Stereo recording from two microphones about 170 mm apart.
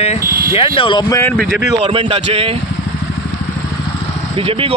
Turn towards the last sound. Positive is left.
turn(degrees=-35)  # may be behind; listen again after turning